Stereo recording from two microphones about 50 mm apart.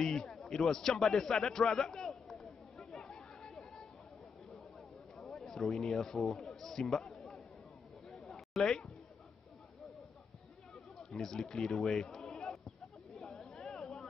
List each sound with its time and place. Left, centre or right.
0.0 s a sound: centre
0.4 s a man's voice: centre
3.0 s chatter: centre
5.2 s speech: centre
6.3 s a sound: centre
11.0 s speech: centre
13.2 s chatter: centre